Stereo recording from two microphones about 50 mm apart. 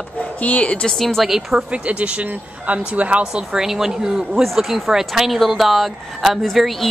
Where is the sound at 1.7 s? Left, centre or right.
Right.